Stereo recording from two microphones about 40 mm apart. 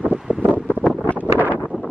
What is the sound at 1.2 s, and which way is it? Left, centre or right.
Wind noise, right.